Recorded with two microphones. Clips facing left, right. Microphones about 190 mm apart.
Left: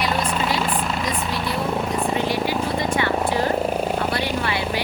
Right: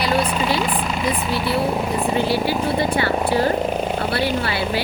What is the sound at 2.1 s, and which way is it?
Vehicle, 30° right (ahead or behind).